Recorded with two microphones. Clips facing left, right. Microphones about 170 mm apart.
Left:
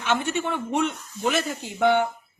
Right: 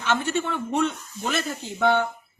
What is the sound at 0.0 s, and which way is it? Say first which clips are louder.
A woman's voice: even; 15° left (ahead or behind).